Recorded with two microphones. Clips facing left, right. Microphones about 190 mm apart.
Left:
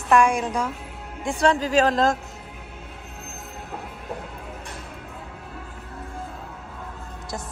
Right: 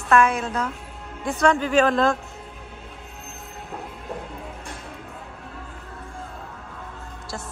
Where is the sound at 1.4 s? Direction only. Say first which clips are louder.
Right 1 dB; 35° left (ahead or behind).